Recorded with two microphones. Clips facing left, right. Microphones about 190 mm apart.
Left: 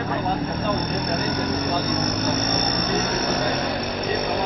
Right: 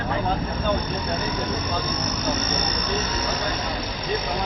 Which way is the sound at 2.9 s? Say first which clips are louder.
Left 4 dB; 55° left (ahead or behind).